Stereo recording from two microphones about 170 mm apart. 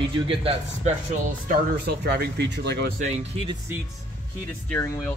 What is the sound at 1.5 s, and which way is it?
Speech, 70° right (ahead or behind).